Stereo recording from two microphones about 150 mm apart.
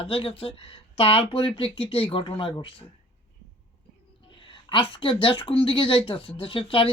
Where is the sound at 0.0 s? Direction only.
40° left (ahead or behind).